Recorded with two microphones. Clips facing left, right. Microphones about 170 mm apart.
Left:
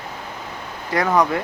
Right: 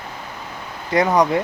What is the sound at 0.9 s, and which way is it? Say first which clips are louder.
Speech: right 2 dB; 20° right (ahead or behind).